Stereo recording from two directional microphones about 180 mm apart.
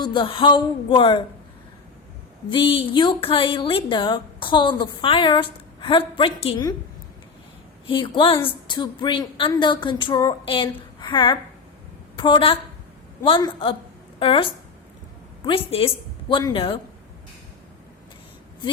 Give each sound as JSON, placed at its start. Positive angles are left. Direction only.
{"t": 0.0, "sound": "a woman's voice", "side_deg": 25}
{"t": 2.5, "sound": "a woman's voice", "side_deg": 30}
{"t": 7.9, "sound": "a woman's voice", "side_deg": 30}